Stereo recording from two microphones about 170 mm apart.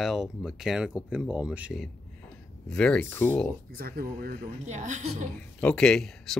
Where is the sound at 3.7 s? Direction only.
60° right (ahead or behind); by 5.2 s 45° right (ahead or behind).